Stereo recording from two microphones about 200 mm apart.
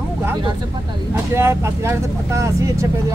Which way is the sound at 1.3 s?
15° right (ahead or behind).